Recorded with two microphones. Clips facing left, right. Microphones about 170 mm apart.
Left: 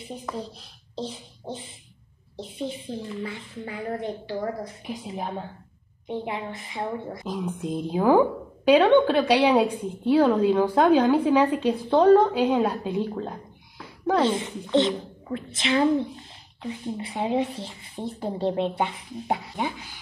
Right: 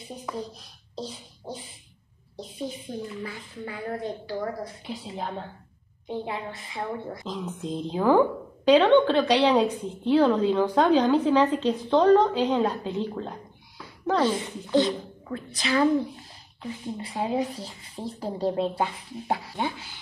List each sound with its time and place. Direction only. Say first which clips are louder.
0.3 s a child's voice: even; 5° right (ahead or behind)
0.9 s a child's voice: left 3 dB; 25° left (ahead or behind)
7.2 s a woman's voice: left 4 dB; 10° left (ahead or behind)
14.2 s a child's voice: left 1 dB; 25° left (ahead or behind)